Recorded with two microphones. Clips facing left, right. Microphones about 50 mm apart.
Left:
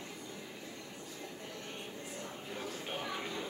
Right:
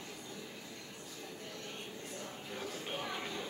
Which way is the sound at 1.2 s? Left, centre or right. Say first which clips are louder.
Even; left.